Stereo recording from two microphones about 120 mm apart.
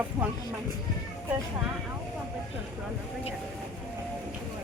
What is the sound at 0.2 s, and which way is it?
Speech, 25° right (ahead or behind).